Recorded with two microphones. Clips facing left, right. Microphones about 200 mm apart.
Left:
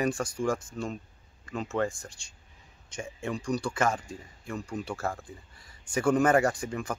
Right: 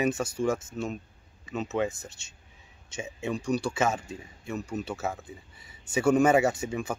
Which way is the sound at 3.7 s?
25° right (ahead or behind).